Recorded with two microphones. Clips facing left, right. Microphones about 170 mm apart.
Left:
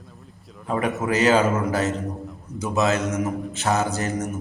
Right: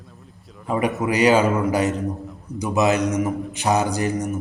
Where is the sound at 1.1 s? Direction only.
15° right (ahead or behind).